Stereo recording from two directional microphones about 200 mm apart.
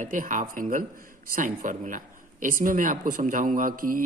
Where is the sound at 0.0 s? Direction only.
40° right (ahead or behind).